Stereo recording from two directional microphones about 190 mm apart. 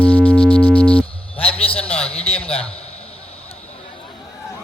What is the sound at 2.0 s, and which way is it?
Speech, 30° left (ahead or behind).